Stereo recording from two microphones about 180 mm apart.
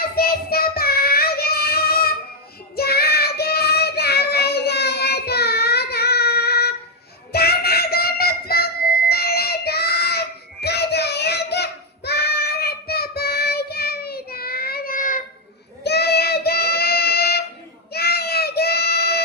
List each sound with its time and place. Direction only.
0.0 s child singing: 55° left (ahead or behind)
7.3 s music: 60° left (ahead or behind)
15.8 s child singing: 65° left (ahead or behind)